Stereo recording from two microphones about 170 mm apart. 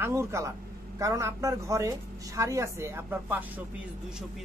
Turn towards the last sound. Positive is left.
turn(degrees=-10)  # may be behind; listen again after turning